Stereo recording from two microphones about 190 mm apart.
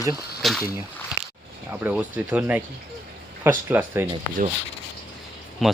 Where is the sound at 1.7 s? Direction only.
10° right (ahead or behind).